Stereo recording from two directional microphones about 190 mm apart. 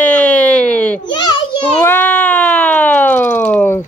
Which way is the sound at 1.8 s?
10° left (ahead or behind).